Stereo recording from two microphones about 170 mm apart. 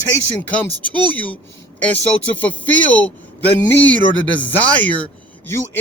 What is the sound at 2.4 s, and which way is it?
A man's voice, 10° left (ahead or behind).